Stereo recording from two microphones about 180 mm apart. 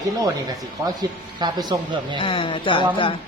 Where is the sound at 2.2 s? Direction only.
30° left (ahead or behind).